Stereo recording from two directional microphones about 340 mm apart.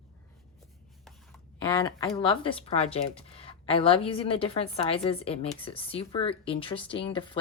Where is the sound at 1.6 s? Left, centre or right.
Centre.